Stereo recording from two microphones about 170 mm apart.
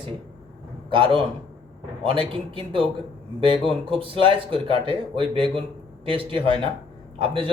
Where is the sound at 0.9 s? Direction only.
30° right (ahead or behind).